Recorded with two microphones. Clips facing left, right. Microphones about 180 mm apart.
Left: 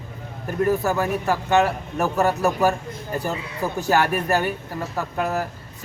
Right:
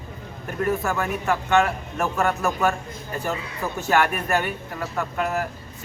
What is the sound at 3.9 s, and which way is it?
Speech, 35° left (ahead or behind).